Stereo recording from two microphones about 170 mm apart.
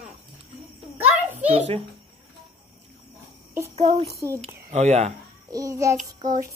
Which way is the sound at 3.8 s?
35° right (ahead or behind).